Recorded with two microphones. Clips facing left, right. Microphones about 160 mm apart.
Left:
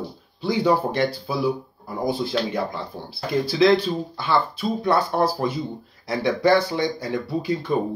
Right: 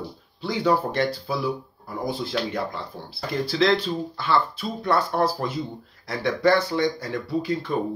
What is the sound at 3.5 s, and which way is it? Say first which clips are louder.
Speech: left 4 dB; 10° left (ahead or behind).